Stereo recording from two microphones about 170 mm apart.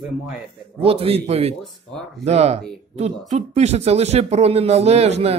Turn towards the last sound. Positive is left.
turn(degrees=-40)  # may be behind; listen again after turning